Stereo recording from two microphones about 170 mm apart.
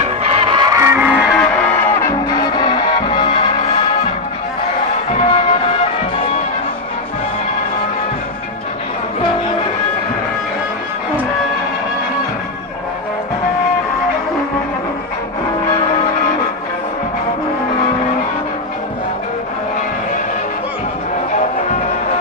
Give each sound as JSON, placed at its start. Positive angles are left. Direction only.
{"t": 0.2, "sound": "music", "side_deg": -35}
{"t": 1.3, "sound": "music", "side_deg": 10}
{"t": 5.1, "sound": "music", "side_deg": 35}